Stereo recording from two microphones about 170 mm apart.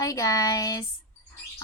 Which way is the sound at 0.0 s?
20° left (ahead or behind).